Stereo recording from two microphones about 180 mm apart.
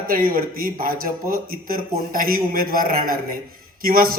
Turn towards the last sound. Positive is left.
turn(degrees=-55)  # may be behind; listen again after turning